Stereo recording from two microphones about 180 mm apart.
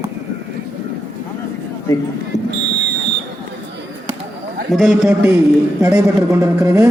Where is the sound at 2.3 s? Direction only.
40° left (ahead or behind).